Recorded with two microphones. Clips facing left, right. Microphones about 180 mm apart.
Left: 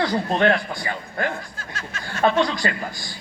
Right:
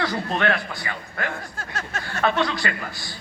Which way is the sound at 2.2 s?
20° left (ahead or behind).